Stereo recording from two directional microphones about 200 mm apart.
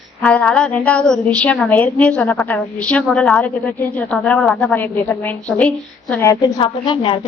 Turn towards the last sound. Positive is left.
turn(degrees=25)  # may be behind; listen again after turning